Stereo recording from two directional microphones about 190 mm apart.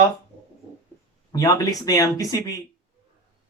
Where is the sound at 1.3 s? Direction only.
20° left (ahead or behind).